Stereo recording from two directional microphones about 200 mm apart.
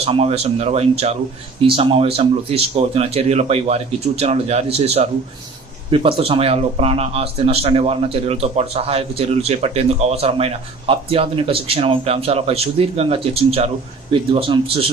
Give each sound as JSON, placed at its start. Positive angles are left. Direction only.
{"t": 0.0, "sound": "a man's voice", "side_deg": -30}